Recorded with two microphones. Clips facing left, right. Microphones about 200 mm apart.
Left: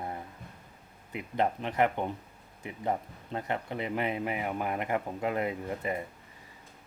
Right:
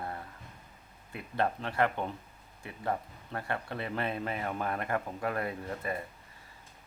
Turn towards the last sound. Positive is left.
turn(degrees=15)  # may be behind; listen again after turning